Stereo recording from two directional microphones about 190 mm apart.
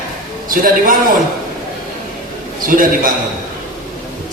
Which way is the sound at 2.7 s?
45° right (ahead or behind).